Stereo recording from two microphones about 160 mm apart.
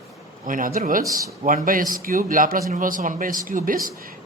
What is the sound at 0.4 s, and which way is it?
Speech, 60° right (ahead or behind).